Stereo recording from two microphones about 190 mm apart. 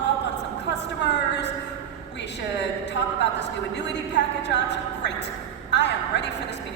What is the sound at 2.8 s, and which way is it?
A woman's voice, 65° left (ahead or behind).